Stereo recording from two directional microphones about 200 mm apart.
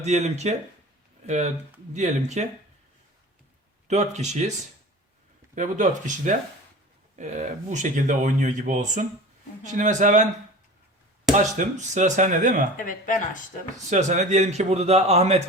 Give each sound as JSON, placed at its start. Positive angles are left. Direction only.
{"t": 0.0, "sound": "speech", "side_deg": -35}
{"t": 3.8, "sound": "speech", "side_deg": -35}
{"t": 5.5, "sound": "speech", "side_deg": -40}
{"t": 11.3, "sound": "speech", "side_deg": -40}
{"t": 12.7, "sound": "speech", "side_deg": 40}
{"t": 13.9, "sound": "speech", "side_deg": -35}